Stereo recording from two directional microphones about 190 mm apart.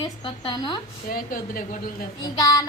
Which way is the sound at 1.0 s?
50° left (ahead or behind).